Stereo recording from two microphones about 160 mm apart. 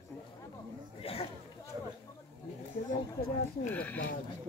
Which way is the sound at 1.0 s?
35° left (ahead or behind).